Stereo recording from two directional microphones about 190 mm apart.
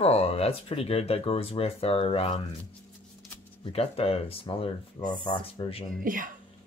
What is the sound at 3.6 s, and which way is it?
Speech, 30° left (ahead or behind).